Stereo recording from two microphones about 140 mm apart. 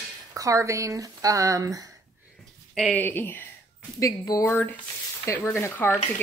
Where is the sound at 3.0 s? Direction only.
15° left (ahead or behind).